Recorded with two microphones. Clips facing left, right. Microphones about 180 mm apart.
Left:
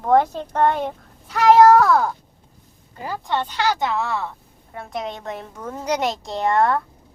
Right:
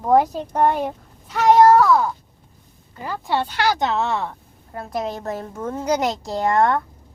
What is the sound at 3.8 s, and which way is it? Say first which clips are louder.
Speech: right 2 dB; 25° right (ahead or behind).